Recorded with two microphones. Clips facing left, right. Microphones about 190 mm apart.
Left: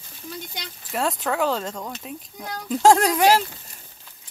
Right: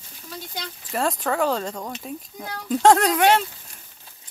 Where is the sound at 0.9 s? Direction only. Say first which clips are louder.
Right 1 dB; centre (ahead or behind).